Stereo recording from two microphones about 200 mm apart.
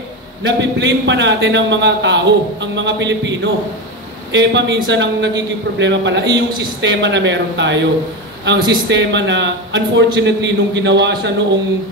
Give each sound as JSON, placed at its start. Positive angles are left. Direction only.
{"t": 0.4, "sound": "a man's voice", "side_deg": -60}